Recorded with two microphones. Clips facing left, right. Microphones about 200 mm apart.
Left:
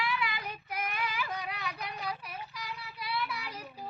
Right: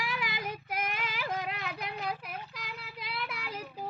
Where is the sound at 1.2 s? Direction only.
55° right (ahead or behind).